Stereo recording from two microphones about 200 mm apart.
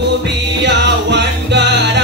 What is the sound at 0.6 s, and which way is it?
Music, 60° right (ahead or behind).